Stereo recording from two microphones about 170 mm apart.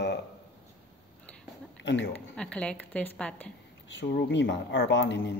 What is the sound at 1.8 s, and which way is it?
Speech, 90° left.